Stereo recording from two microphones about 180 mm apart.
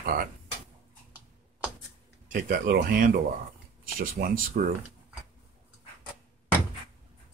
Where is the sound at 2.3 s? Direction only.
55° right (ahead or behind).